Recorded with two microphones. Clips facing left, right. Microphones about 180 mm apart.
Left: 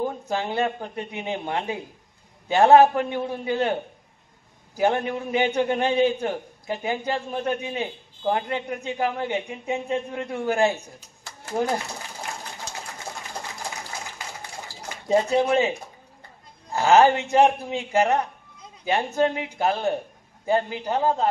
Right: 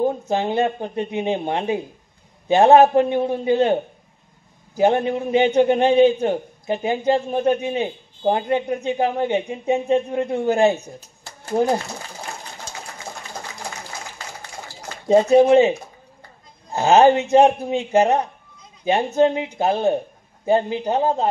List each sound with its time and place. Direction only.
0.0 s a man's voice: 20° right (ahead or behind)
15.0 s a man's voice: 20° right (ahead or behind)
16.7 s a man's voice: 20° right (ahead or behind)